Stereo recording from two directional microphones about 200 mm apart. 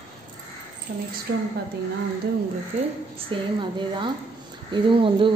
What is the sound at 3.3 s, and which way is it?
A woman's voice, 25° right (ahead or behind).